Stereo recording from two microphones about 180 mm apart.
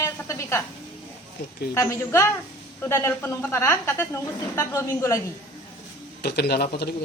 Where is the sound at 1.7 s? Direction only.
15° left (ahead or behind).